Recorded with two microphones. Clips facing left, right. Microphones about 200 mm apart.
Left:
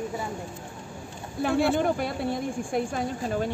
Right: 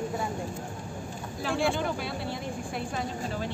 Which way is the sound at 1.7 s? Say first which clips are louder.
Left 6 dB; 50° left (ahead or behind).